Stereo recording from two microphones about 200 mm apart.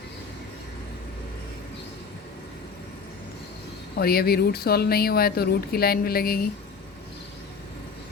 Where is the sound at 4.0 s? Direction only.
50° left (ahead or behind).